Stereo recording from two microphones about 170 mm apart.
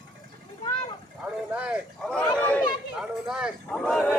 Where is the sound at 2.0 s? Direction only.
5° left (ahead or behind).